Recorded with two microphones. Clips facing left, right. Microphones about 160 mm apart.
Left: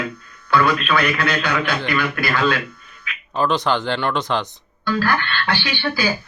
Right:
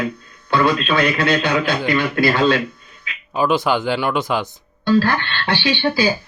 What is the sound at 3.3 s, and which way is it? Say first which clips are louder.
Speech: right 2 dB; 10° right (ahead or behind).